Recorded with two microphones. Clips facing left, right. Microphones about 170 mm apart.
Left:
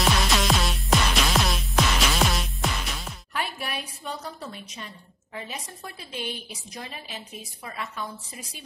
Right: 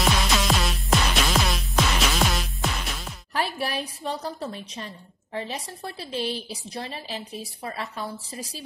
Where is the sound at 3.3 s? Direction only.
35° right (ahead or behind).